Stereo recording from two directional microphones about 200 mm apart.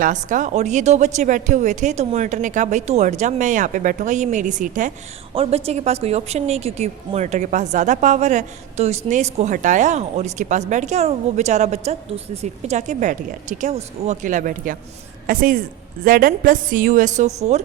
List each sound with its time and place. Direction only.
0.0 s speech: 40° right (ahead or behind)
5.3 s a woman's voice: 30° right (ahead or behind)